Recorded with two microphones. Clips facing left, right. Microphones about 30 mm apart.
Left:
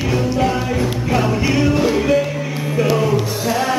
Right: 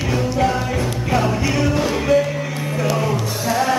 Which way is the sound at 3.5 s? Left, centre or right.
Centre.